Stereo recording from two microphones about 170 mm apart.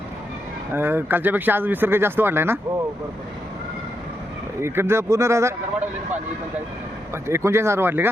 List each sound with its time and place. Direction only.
0.7 s speech: 15° right (ahead or behind)
4.6 s speech: 15° right (ahead or behind)
7.1 s speech: 15° right (ahead or behind)